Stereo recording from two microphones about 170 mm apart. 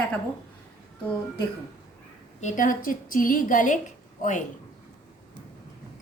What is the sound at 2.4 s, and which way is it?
A woman's voice, 50° left (ahead or behind).